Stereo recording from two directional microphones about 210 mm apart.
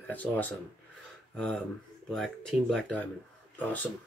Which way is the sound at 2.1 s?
Centre (ahead or behind).